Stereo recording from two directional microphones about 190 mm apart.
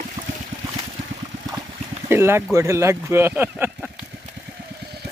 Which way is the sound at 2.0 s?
15° right (ahead or behind).